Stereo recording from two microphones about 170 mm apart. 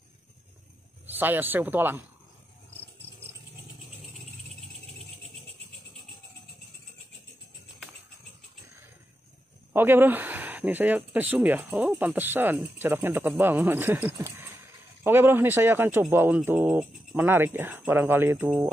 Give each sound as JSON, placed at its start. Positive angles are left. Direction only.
{"t": 1.0, "sound": "speech", "side_deg": -10}
{"t": 9.7, "sound": "speech", "side_deg": -10}